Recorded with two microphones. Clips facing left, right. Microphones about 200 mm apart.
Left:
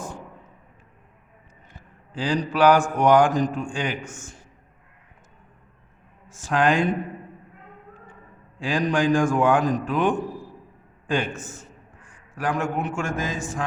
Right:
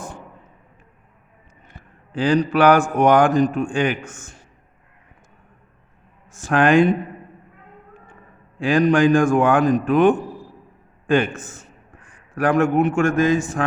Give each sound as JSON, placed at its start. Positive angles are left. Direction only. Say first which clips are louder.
{"t": 1.7, "sound": "speech", "louder": "right 6 dB", "side_deg": -60}
{"t": 6.4, "sound": "speech", "louder": "right 6 dB", "side_deg": -60}
{"t": 8.5, "sound": "speech", "louder": "right 7 dB", "side_deg": -60}
{"t": 11.0, "sound": "a sound", "louder": "right 7 dB", "side_deg": -55}
{"t": 12.3, "sound": "speech", "louder": "right 8 dB", "side_deg": -60}